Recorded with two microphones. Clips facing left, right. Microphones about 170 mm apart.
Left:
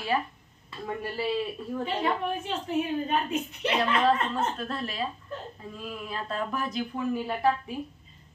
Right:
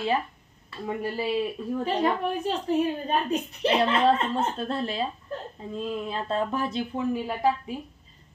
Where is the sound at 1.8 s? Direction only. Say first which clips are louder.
Right 3 dB; 40° right (ahead or behind).